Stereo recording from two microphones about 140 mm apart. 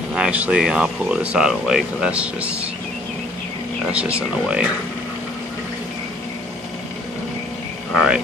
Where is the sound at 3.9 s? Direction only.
10° right (ahead or behind).